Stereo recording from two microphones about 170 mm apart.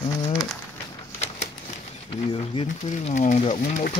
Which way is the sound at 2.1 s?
35° left (ahead or behind).